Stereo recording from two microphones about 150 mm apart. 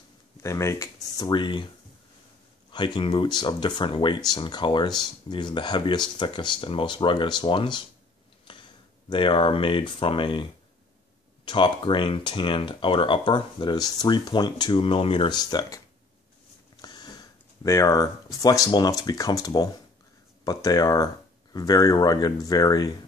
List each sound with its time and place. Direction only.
0.4 s speech: 20° left (ahead or behind)
1.1 s speech: 30° left (ahead or behind)
2.7 s speech: 30° left (ahead or behind)
9.1 s speech: 35° left (ahead or behind)
16.8 s speech: 30° left (ahead or behind)